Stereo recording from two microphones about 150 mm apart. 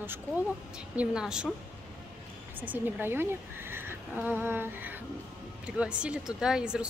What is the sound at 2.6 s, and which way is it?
Speech, 10° right (ahead or behind).